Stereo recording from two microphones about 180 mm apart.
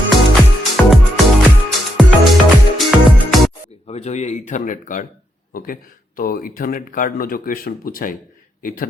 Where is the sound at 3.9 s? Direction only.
40° left (ahead or behind).